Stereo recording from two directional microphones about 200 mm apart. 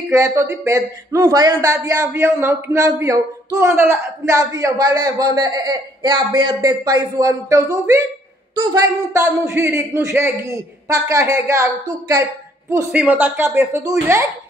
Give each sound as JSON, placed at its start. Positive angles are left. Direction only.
{"t": 0.1, "sound": "speech", "side_deg": -15}